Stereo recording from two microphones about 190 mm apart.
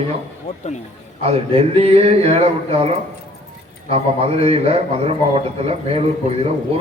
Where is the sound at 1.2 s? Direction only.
30° right (ahead or behind).